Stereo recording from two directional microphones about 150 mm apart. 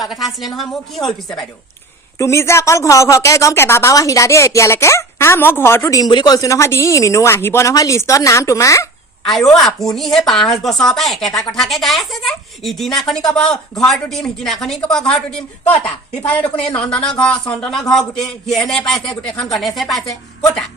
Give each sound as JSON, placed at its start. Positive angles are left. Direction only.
{"t": 0.0, "sound": "a woman's voice", "side_deg": 0}
{"t": 2.1, "sound": "speech", "side_deg": 20}
{"t": 9.2, "sound": "a woman's voice", "side_deg": 0}